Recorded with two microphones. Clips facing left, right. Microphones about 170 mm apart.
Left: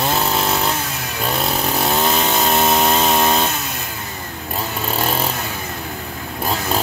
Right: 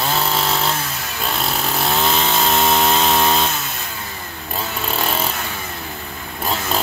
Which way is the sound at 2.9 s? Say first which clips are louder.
Left 1 dB; 10° left (ahead or behind).